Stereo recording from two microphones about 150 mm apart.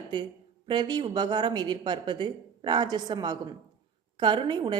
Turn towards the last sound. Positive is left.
turn(degrees=-30)  # may be behind; listen again after turning